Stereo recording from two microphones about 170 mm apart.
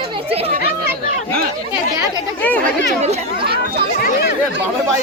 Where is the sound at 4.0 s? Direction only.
65° left (ahead or behind).